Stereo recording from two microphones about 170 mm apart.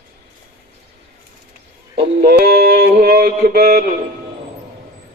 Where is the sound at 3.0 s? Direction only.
65° right (ahead or behind).